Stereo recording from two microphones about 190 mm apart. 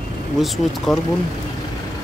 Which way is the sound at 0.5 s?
Centre (ahead or behind).